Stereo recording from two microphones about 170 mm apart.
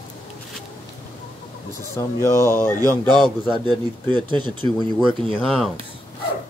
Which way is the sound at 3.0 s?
25° right (ahead or behind).